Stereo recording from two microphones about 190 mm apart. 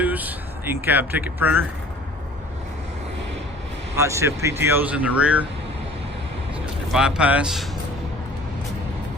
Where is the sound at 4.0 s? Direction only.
15° right (ahead or behind).